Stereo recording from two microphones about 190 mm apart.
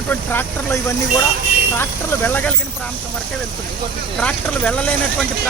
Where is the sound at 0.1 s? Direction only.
10° left (ahead or behind).